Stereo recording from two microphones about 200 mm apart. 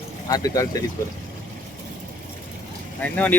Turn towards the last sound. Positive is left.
turn(degrees=5)  # may be behind; listen again after turning